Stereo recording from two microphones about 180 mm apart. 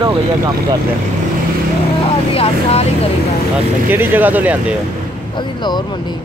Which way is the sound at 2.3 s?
35° left (ahead or behind).